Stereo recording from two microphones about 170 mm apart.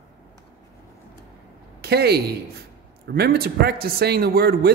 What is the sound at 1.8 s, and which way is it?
A man's voice, 70° right (ahead or behind).